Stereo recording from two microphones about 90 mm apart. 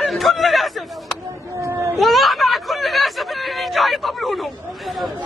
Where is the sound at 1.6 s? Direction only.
30° right (ahead or behind).